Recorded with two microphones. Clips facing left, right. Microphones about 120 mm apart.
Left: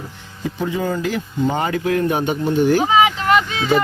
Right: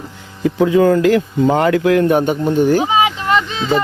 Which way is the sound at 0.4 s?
90° right.